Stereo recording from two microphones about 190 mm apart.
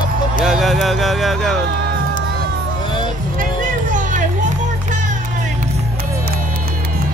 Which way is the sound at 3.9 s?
40° right (ahead or behind).